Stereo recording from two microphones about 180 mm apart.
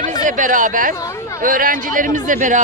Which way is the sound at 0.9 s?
15° left (ahead or behind).